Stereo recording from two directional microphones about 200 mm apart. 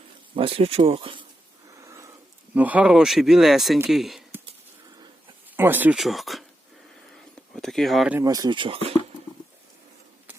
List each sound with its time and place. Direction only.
0.3 s speech: 25° right (ahead or behind)
1.7 s a sound: 15° right (ahead or behind)
2.6 s speech: 5° right (ahead or behind)
5.5 s speech: 10° right (ahead or behind)
7.1 s a sound: centre (ahead or behind)
8.2 s speech: 20° right (ahead or behind)